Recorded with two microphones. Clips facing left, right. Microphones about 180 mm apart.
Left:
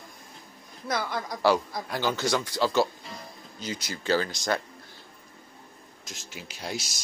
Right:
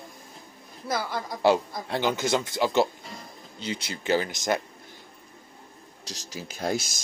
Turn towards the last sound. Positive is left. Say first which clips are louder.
# right 7 dB
turn(degrees=-50)  # may be behind; listen again after turning